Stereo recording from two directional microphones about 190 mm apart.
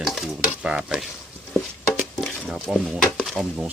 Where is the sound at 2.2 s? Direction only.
Centre (ahead or behind).